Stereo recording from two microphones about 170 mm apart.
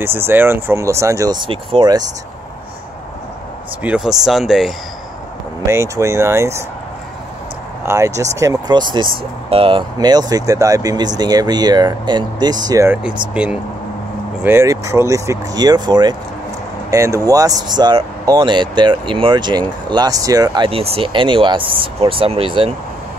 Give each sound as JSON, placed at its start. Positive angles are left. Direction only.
{"t": 0.0, "sound": "speech", "side_deg": -15}
{"t": 3.8, "sound": "speech", "side_deg": -5}
{"t": 5.7, "sound": "speech", "side_deg": -15}
{"t": 7.8, "sound": "speech", "side_deg": -15}